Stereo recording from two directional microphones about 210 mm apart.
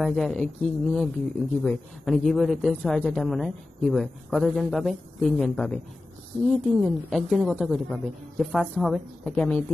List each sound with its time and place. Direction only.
0.0 s speech: centre (ahead or behind)